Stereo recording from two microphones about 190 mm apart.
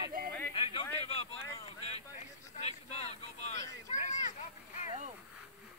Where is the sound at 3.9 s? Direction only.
40° left (ahead or behind).